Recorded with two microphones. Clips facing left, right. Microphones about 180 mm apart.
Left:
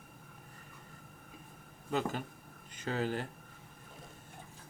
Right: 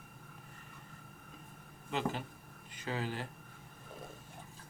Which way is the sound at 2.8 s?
45° left (ahead or behind).